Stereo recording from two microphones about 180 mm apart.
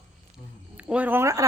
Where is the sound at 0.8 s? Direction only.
10° right (ahead or behind).